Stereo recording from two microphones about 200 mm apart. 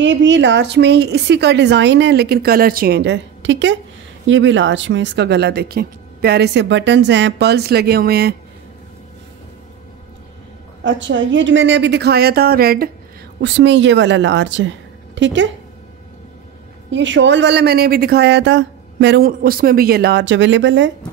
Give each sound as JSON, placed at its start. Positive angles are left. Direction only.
{"t": 0.0, "sound": "speech", "side_deg": -65}
{"t": 10.8, "sound": "speech", "side_deg": -65}
{"t": 13.4, "sound": "speech", "side_deg": -60}
{"t": 16.9, "sound": "speech", "side_deg": -65}